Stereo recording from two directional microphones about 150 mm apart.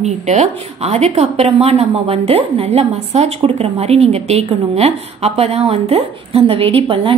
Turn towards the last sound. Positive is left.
turn(degrees=-40)  # may be behind; listen again after turning